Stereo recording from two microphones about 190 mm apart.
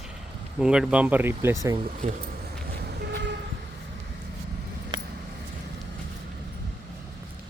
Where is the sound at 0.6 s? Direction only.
5° right (ahead or behind).